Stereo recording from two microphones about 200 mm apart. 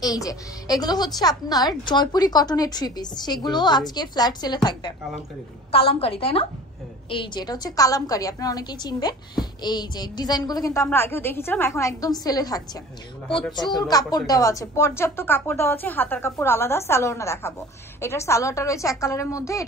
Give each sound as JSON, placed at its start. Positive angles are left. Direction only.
{"t": 0.0, "sound": "a woman's voice", "side_deg": 15}
{"t": 5.7, "sound": "a woman's voice", "side_deg": 30}